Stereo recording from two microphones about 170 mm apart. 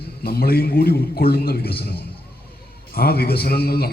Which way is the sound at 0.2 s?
65° left (ahead or behind).